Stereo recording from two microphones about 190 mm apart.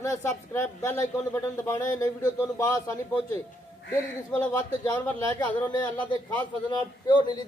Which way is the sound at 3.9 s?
10° left (ahead or behind).